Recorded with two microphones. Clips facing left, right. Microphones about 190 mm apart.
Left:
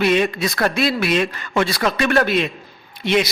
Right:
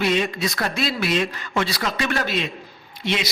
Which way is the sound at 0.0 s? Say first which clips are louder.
Left 4 dB; 60° left (ahead or behind).